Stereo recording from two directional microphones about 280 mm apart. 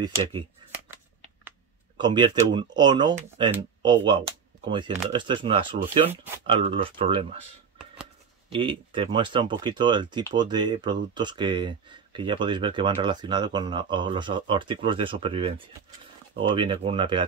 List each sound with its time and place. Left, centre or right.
2.0 s speech: centre
8.5 s speech: centre